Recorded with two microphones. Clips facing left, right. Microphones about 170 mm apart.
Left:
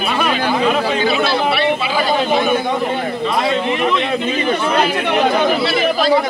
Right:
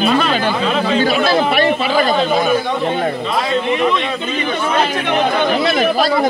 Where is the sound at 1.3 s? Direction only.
45° right (ahead or behind).